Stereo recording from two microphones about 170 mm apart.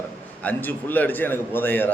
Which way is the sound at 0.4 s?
10° left (ahead or behind).